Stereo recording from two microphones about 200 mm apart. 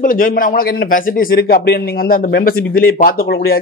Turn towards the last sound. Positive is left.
turn(degrees=45)  # may be behind; listen again after turning